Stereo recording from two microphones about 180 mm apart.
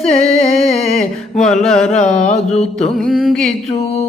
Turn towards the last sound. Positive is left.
turn(degrees=0)  # may be behind; listen again after turning